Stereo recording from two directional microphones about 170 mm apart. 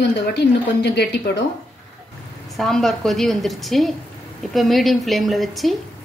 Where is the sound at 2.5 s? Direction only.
Centre (ahead or behind).